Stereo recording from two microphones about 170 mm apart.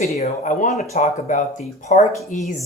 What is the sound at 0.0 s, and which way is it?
Speech, 40° left (ahead or behind).